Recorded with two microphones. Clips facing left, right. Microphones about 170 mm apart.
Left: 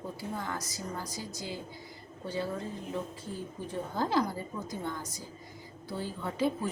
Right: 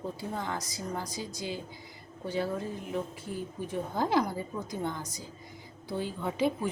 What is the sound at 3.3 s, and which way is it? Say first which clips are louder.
Speech: right 4 dB; 15° right (ahead or behind).